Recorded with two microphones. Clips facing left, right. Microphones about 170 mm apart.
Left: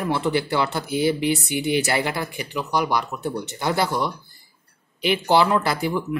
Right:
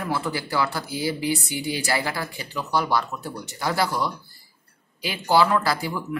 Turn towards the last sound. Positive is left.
turn(degrees=25)  # may be behind; listen again after turning